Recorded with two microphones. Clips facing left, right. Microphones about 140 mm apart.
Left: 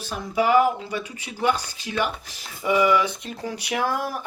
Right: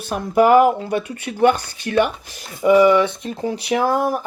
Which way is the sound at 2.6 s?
40° right (ahead or behind).